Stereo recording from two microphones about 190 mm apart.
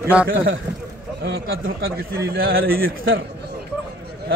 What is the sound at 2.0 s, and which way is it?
A man's voice, 55° right (ahead or behind).